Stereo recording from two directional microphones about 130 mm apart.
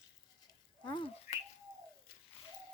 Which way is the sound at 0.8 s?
40° left (ahead or behind).